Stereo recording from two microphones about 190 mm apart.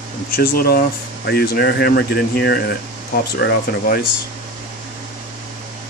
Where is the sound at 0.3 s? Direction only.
50° left (ahead or behind).